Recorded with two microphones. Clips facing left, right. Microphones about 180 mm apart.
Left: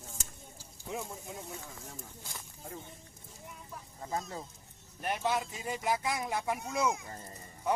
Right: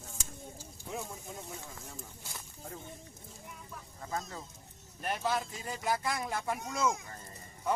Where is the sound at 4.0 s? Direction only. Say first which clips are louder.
Left 2 dB; 25° left (ahead or behind).